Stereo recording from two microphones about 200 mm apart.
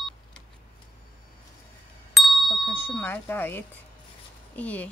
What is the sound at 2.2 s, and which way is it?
Speech, centre (ahead or behind).